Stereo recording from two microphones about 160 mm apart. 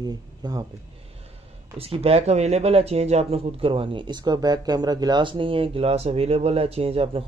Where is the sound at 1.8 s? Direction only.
40° right (ahead or behind).